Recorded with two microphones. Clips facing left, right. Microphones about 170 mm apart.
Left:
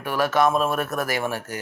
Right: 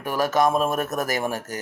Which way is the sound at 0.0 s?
45° right (ahead or behind).